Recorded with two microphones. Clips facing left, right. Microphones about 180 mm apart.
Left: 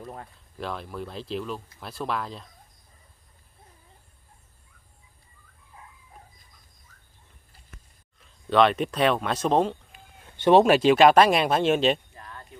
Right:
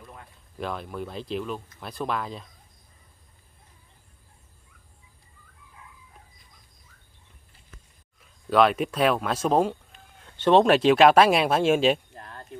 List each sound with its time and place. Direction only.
0.0 s a sound: 40° left (ahead or behind)
0.6 s speech: centre (ahead or behind)
6.9 s bird: 40° left (ahead or behind)
8.2 s speech: 5° right (ahead or behind)
9.9 s speech: 10° left (ahead or behind); by 12.0 s 5° right (ahead or behind)
12.1 s a sound: 45° right (ahead or behind)